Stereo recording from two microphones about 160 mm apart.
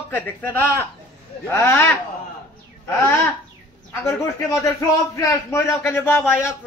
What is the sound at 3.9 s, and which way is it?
A man's voice, 20° left (ahead or behind).